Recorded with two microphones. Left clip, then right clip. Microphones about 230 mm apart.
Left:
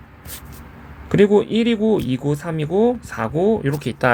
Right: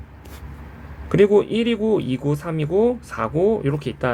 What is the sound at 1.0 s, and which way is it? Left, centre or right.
Speech, left.